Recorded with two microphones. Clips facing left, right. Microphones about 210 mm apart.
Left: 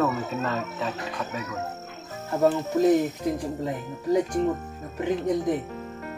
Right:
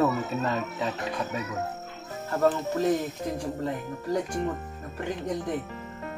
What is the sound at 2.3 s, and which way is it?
Speech, 10° left (ahead or behind).